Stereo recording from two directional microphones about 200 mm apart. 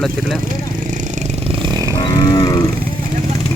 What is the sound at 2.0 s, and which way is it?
Cattle, 25° left (ahead or behind).